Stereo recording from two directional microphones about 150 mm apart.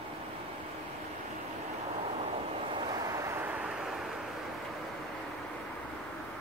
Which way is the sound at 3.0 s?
20° right (ahead or behind).